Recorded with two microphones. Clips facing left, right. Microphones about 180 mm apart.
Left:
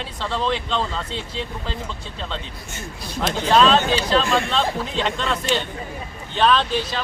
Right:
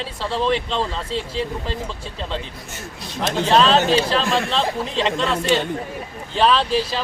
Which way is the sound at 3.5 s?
30° right (ahead or behind).